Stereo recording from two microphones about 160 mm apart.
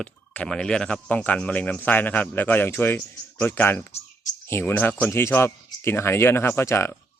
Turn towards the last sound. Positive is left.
turn(degrees=15)  # may be behind; listen again after turning